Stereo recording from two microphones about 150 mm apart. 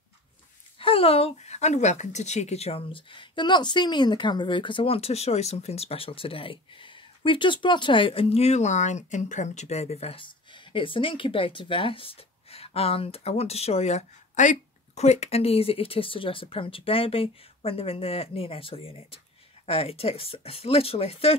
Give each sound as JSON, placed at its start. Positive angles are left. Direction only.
{"t": 0.7, "sound": "speech", "side_deg": 40}